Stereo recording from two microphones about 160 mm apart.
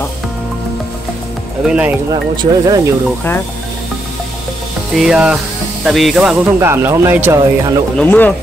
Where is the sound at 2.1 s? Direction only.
25° right (ahead or behind).